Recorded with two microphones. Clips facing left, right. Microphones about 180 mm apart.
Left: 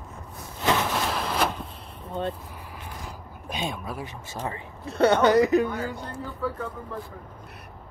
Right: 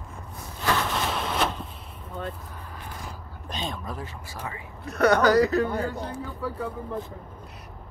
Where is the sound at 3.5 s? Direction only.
10° left (ahead or behind).